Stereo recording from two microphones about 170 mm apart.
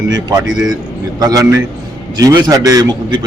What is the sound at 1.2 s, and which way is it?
A man's voice, 20° right (ahead or behind).